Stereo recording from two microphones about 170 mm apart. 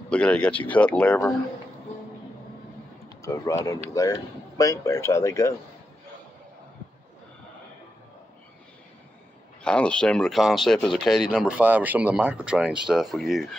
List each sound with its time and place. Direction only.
0.1 s speech: 5° left (ahead or behind)
3.2 s speech: 20° left (ahead or behind)
9.6 s speech: 5° left (ahead or behind)